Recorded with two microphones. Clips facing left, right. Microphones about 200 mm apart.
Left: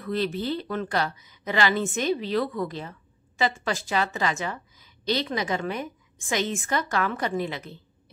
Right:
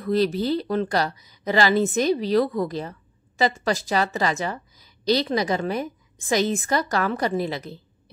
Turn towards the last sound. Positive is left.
turn(degrees=-35)  # may be behind; listen again after turning